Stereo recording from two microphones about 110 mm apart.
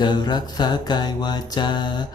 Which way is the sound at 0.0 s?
40° left (ahead or behind).